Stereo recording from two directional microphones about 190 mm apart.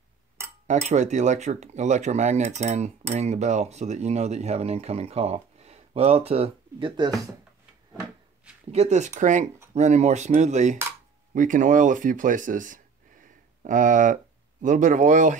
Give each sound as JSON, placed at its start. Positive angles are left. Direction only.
{"t": 0.7, "sound": "speech", "side_deg": -35}
{"t": 8.7, "sound": "speech", "side_deg": -35}